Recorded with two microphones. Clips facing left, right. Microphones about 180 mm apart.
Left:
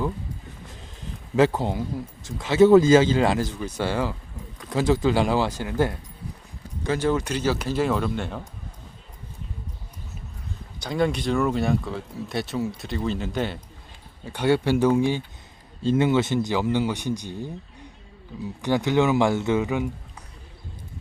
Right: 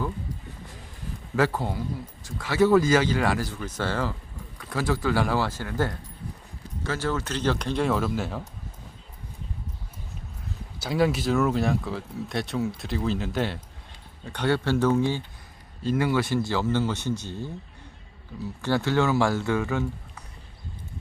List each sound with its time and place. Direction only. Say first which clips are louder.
1.4 s speech: left 4 dB; 20° left (ahead or behind); by 8.4 s centre (ahead or behind)
10.8 s speech: even; 5° right (ahead or behind); by 15.2 s 15° left (ahead or behind)
15.8 s speech: left 4 dB; 25° left (ahead or behind)
18.6 s speech: left 3 dB; 15° left (ahead or behind)